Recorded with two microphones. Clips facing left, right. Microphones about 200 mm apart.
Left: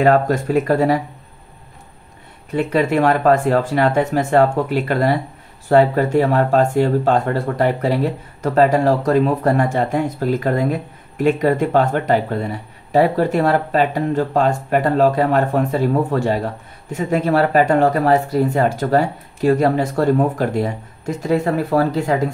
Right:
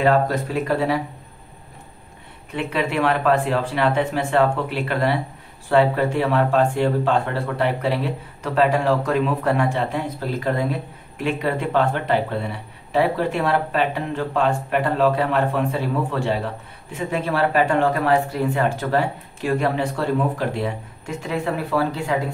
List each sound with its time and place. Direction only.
0.0 s speech: 45° left (ahead or behind)
2.5 s speech: 40° left (ahead or behind)